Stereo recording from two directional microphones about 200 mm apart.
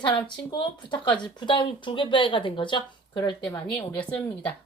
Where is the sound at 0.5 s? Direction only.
20° left (ahead or behind).